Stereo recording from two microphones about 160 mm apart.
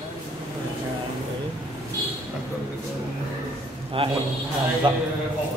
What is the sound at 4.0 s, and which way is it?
A man's voice, 35° right (ahead or behind).